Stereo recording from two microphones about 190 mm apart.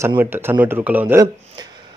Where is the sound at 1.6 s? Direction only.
20° right (ahead or behind).